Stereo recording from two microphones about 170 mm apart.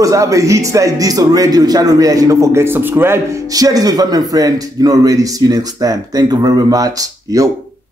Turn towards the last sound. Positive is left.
turn(degrees=-20)  # may be behind; listen again after turning